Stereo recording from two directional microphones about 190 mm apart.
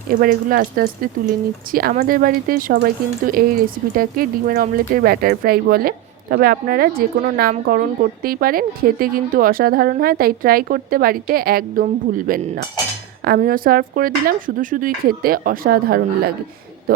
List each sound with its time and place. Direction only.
0.1 s speech: 45° right (ahead or behind)